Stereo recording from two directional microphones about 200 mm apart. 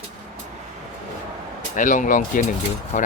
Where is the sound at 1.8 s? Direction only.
40° left (ahead or behind).